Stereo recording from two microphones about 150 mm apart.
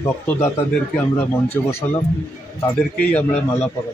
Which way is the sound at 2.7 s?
10° left (ahead or behind).